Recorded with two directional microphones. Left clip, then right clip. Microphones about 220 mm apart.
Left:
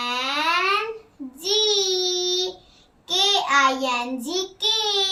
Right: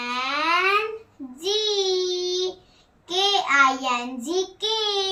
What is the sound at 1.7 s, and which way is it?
Child singing, 20° left (ahead or behind).